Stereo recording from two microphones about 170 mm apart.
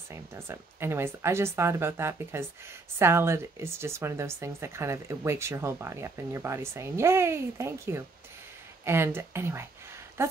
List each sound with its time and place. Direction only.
0.1 s speech: 15° right (ahead or behind)